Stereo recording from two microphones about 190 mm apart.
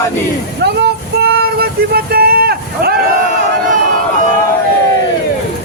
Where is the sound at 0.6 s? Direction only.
60° right (ahead or behind).